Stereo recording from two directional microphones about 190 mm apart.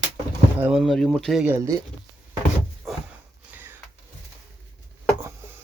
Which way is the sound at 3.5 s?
10° right (ahead or behind).